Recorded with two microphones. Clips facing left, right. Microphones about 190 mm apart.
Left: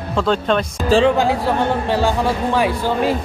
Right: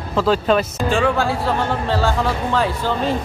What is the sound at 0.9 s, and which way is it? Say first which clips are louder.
Speech: left 5 dB; 20° left (ahead or behind).